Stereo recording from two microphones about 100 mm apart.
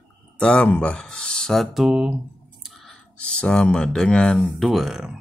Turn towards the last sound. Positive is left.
turn(degrees=-5)  # may be behind; listen again after turning